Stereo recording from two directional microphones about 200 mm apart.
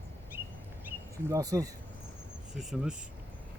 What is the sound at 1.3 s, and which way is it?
Speech, 15° right (ahead or behind).